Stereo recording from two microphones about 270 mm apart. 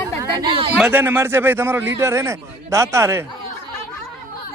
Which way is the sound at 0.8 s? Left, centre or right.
Centre.